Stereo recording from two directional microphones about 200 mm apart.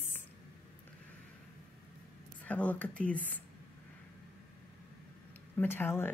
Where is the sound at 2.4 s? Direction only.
5° left (ahead or behind).